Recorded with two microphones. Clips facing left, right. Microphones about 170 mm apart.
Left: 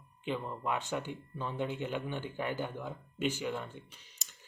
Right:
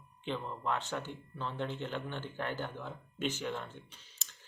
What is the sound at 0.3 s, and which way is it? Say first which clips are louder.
Speech: left 1 dB; 10° left (ahead or behind).